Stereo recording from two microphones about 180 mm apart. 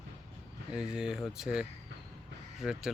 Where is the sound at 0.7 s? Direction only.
5° right (ahead or behind).